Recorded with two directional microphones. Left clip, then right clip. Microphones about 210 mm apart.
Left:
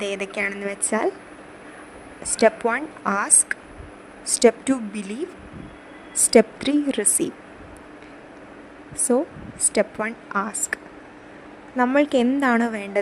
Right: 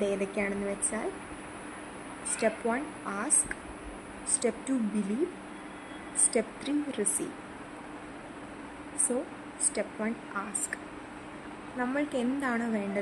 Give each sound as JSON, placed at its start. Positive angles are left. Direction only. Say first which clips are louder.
{"t": 0.0, "sound": "a woman's voice", "louder": "left 5 dB", "side_deg": 50}
{"t": 2.3, "sound": "a woman's voice", "louder": "left 11 dB", "side_deg": 50}
{"t": 6.3, "sound": "a woman's voice", "louder": "left 16 dB", "side_deg": 50}
{"t": 9.1, "sound": "a woman's voice", "louder": "left 15 dB", "side_deg": 45}
{"t": 11.8, "sound": "a woman's voice", "louder": "left 13 dB", "side_deg": 45}